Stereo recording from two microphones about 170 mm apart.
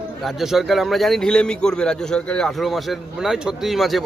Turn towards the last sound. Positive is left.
turn(degrees=0)  # may be behind; listen again after turning